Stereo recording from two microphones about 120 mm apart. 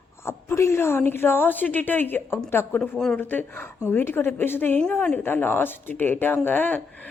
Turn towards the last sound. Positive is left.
turn(degrees=15)  # may be behind; listen again after turning